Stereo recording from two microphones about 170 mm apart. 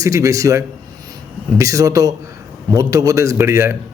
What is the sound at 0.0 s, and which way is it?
A man's voice, 20° right (ahead or behind).